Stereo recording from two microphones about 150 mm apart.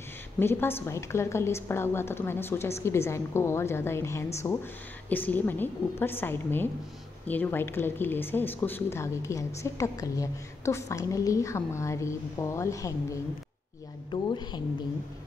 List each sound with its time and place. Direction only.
0.4 s a woman's voice: 15° left (ahead or behind)
14.1 s a woman's voice: 30° left (ahead or behind)